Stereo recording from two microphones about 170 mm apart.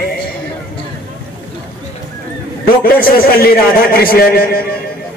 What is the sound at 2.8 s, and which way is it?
Speech, 55° left (ahead or behind).